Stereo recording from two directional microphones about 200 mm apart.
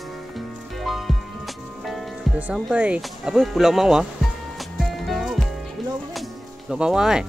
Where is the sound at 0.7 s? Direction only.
Centre (ahead or behind).